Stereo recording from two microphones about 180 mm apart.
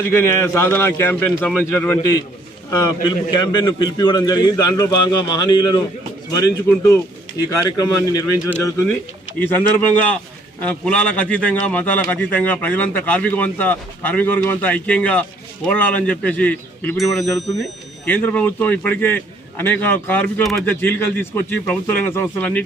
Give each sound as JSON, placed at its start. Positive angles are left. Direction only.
{"t": 0.1, "sound": "a man's voice", "side_deg": 15}